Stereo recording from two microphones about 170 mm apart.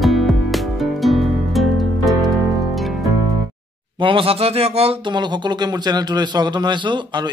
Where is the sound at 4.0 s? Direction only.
30° right (ahead or behind).